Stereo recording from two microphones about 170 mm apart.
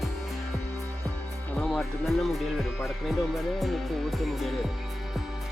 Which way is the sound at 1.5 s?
Centre (ahead or behind).